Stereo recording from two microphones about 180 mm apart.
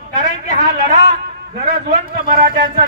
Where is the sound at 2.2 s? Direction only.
55° right (ahead or behind).